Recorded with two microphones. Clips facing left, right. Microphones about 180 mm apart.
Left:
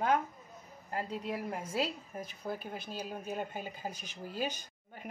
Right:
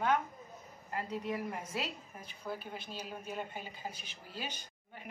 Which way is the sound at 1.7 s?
35° left (ahead or behind).